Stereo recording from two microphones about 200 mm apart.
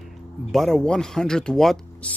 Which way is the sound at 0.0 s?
Centre (ahead or behind).